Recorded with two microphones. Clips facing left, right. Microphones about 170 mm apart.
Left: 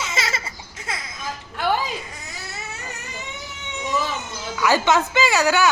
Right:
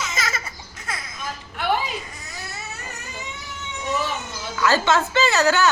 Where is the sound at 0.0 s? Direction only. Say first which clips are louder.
Left 1 dB; 30° left (ahead or behind).